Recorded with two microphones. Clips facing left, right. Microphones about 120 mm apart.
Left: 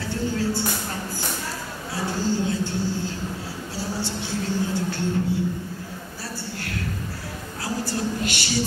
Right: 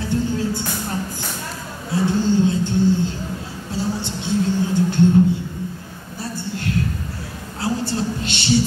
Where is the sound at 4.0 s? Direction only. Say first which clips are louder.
Right 3 dB; 20° right (ahead or behind).